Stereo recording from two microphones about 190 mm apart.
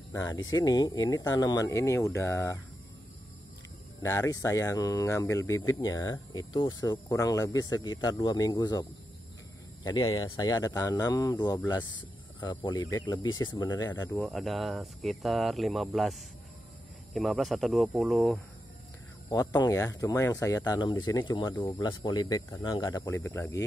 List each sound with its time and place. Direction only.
0.1 s speech: 15° left (ahead or behind)
4.0 s speech: 15° left (ahead or behind)
9.8 s speech: 20° left (ahead or behind)
14.1 s speech: 5° left (ahead or behind)
19.2 s speech: 20° left (ahead or behind)